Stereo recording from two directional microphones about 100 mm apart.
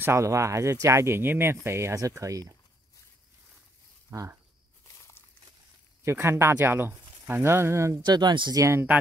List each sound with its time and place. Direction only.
0.0 s speech: 30° right (ahead or behind)
4.1 s speech: 35° right (ahead or behind)
6.0 s speech: 25° right (ahead or behind)
8.0 s speech: 45° right (ahead or behind)